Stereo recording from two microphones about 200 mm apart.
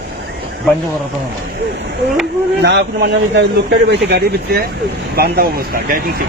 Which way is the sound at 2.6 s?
60° right (ahead or behind).